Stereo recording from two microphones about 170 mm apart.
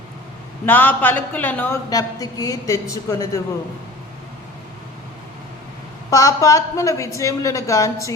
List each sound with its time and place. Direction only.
0.6 s a man's voice: 10° left (ahead or behind)
6.1 s speech: 20° left (ahead or behind)